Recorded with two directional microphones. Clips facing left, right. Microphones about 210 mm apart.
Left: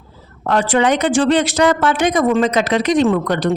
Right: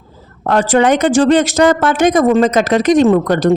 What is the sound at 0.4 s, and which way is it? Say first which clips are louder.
Speech: right 3 dB; 45° right (ahead or behind).